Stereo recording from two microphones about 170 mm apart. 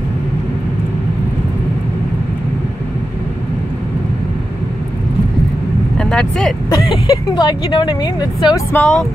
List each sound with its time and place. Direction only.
5.9 s vehicle: 5° left (ahead or behind)
7.1 s a woman's voice: 25° left (ahead or behind)
8.7 s speech: 5° left (ahead or behind)